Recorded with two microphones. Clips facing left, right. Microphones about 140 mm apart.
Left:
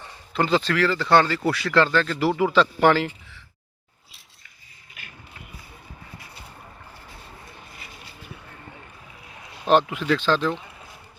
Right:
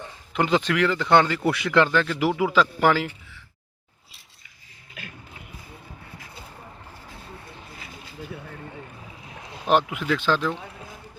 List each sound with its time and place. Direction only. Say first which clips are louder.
0.3 s speech: even; 15° right (ahead or behind)
9.6 s speech: left 2 dB; 10° right (ahead or behind)